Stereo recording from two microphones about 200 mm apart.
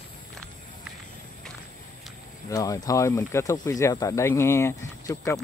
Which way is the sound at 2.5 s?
15° left (ahead or behind).